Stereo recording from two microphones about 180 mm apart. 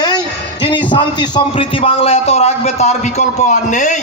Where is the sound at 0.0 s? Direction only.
25° left (ahead or behind).